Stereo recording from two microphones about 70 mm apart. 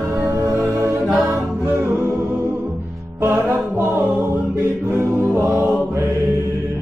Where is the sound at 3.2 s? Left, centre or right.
Right.